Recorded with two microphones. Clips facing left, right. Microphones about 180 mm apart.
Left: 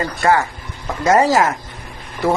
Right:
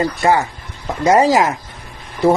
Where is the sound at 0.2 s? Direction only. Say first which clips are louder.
Left 3 dB; 20° right (ahead or behind).